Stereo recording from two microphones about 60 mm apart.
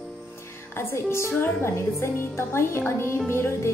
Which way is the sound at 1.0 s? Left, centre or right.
Left.